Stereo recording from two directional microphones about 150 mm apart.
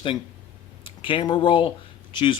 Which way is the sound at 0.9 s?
35° left (ahead or behind).